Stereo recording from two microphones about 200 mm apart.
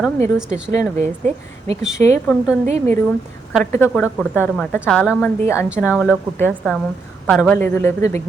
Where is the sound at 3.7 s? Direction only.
10° left (ahead or behind).